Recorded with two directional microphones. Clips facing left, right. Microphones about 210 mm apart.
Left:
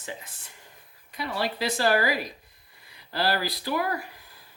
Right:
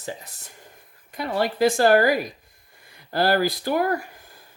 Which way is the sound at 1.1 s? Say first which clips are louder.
Right 5 dB; 50° right (ahead or behind).